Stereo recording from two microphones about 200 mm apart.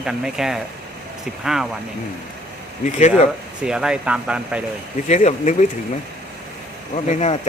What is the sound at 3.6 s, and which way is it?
Speech, 5° right (ahead or behind).